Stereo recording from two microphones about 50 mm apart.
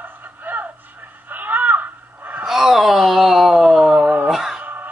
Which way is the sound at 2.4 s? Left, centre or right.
Centre.